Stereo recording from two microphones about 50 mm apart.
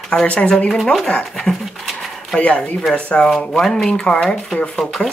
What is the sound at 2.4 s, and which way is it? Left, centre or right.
Speech, left.